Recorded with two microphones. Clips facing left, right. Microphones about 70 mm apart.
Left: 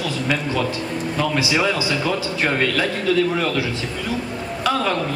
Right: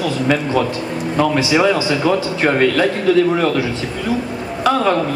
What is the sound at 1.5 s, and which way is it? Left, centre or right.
A man's voice, right.